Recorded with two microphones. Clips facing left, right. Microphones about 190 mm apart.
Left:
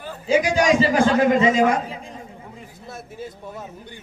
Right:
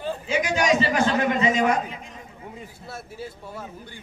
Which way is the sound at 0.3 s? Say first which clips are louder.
Left 5 dB; 35° left (ahead or behind).